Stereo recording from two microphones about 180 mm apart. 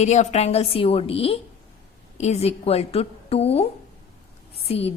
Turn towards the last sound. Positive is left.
turn(degrees=35)  # may be behind; listen again after turning